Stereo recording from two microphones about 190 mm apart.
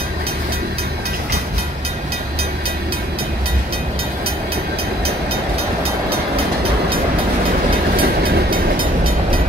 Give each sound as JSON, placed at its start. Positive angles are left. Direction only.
{"t": 7.9, "sound": "vehicle", "side_deg": -50}